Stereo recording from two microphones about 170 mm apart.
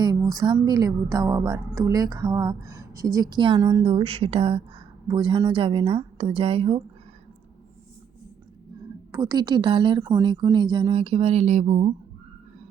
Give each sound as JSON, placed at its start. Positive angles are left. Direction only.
{"t": 0.0, "sound": "a woman's voice", "side_deg": -25}
{"t": 9.1, "sound": "a woman's voice", "side_deg": -20}